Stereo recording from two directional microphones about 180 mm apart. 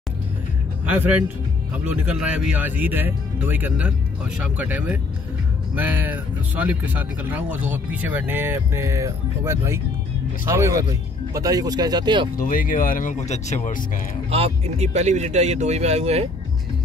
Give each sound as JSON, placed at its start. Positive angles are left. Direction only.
{"t": 0.8, "sound": "speech", "side_deg": -10}
{"t": 12.4, "sound": "speech", "side_deg": 50}
{"t": 14.3, "sound": "speech", "side_deg": -35}